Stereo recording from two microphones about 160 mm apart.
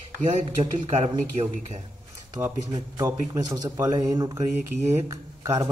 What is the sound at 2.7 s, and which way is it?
Speech, 20° right (ahead or behind).